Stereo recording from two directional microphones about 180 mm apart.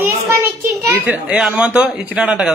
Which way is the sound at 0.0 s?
15° right (ahead or behind).